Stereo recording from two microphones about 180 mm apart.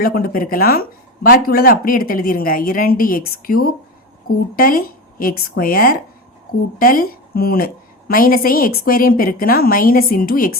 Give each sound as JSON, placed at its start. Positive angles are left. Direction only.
{"t": 0.0, "sound": "a woman's voice", "side_deg": 55}